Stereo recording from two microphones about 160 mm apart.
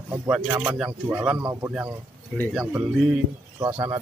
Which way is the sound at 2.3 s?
5° left (ahead or behind).